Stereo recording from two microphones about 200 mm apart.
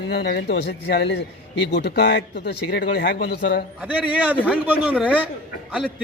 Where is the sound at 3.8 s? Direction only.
5° right (ahead or behind).